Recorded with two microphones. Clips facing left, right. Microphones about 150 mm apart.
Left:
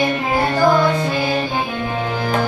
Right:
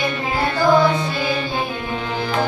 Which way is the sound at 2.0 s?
45° left (ahead or behind).